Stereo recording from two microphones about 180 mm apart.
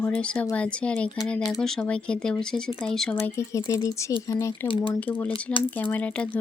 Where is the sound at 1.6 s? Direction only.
5° left (ahead or behind).